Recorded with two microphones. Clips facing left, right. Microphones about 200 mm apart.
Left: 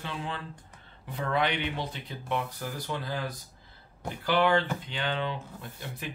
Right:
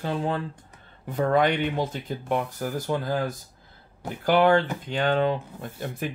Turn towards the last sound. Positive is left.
turn(degrees=-50)  # may be behind; listen again after turning